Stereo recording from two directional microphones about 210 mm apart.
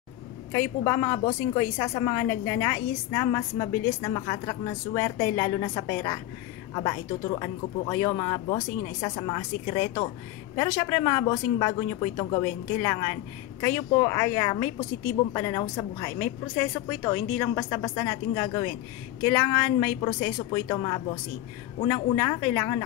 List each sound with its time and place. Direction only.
0.5 s a woman's voice: 15° left (ahead or behind)